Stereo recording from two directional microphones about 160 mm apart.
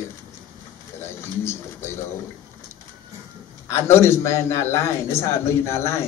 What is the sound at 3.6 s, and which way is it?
Speech, 15° left (ahead or behind).